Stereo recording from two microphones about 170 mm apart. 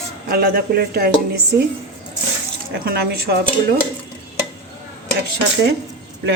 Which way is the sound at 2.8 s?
65° right (ahead or behind).